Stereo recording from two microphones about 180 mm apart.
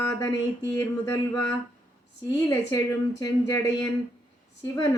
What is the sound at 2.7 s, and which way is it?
Speech, 15° left (ahead or behind).